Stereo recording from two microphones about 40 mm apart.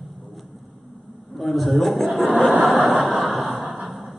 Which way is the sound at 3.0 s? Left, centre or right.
Centre.